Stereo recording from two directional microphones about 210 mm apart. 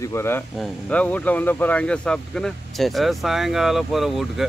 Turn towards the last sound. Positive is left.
turn(degrees=0)  # may be behind; listen again after turning